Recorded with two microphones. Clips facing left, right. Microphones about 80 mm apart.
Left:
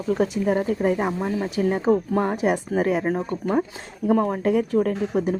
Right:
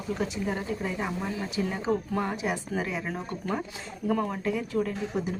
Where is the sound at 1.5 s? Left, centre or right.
Left.